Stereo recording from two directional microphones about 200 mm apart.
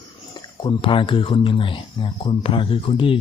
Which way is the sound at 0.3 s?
25° left (ahead or behind).